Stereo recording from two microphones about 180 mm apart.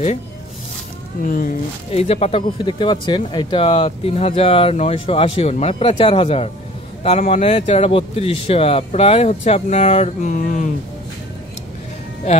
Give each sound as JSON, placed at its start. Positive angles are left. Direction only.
{"t": 1.2, "sound": "speech", "side_deg": 50}
{"t": 1.9, "sound": "speech", "side_deg": 35}